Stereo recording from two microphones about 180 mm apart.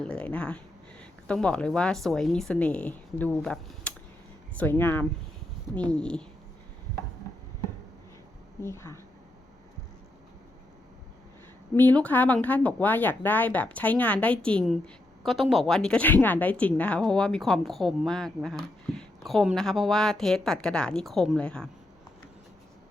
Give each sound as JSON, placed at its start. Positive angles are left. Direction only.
{"t": 0.0, "sound": "a woman's voice", "side_deg": 5}
{"t": 8.6, "sound": "speech", "side_deg": 15}
{"t": 11.7, "sound": "a woman's voice", "side_deg": 10}